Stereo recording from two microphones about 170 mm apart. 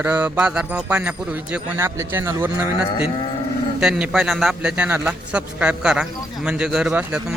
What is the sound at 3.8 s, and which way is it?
A man's voice, 5° right (ahead or behind).